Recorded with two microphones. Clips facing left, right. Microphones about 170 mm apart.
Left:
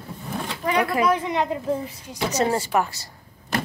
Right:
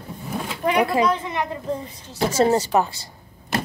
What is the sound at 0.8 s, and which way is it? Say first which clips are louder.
Speech: right 2 dB; 25° right (ahead or behind).